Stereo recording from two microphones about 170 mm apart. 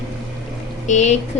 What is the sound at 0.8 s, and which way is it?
Speech, 40° left (ahead or behind).